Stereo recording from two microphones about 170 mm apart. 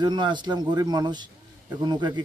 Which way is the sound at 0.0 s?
25° right (ahead or behind).